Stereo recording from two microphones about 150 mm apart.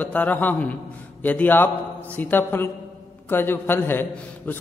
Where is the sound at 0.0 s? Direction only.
10° left (ahead or behind).